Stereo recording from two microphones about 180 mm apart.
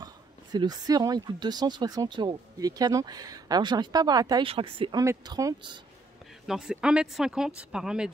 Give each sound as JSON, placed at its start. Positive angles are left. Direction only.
{"t": 0.0, "sound": "speech", "side_deg": -20}
{"t": 6.4, "sound": "speech", "side_deg": -5}